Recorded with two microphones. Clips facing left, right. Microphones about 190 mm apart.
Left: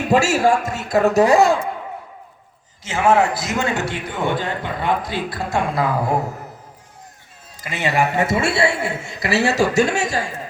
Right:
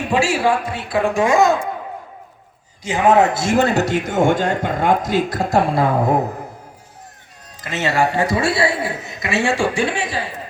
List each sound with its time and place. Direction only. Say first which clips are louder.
0.1 s speech: left 2 dB; 45° left (ahead or behind)
2.8 s a man's voice: right 2 dB; 15° right (ahead or behind)
7.6 s a man's voice: right 1 dB; 15° left (ahead or behind); by 10.3 s 45° left (ahead or behind)